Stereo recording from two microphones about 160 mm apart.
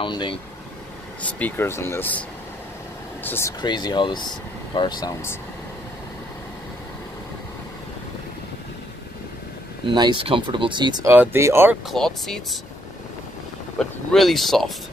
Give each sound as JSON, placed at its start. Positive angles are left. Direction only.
{"t": 0.0, "sound": "speech", "side_deg": 30}
{"t": 1.2, "sound": "speech", "side_deg": 10}
{"t": 3.3, "sound": "speech", "side_deg": 15}
{"t": 3.6, "sound": "speech", "side_deg": 30}
{"t": 9.8, "sound": "speech", "side_deg": -30}
{"t": 11.1, "sound": "speech", "side_deg": -15}
{"t": 11.9, "sound": "speech", "side_deg": 0}
{"t": 13.7, "sound": "speech", "side_deg": 0}